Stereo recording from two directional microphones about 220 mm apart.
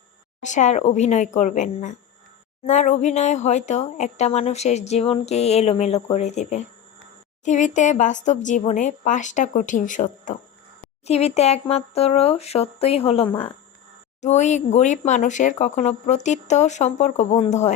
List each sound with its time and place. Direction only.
0.4 s speech: 35° left (ahead or behind)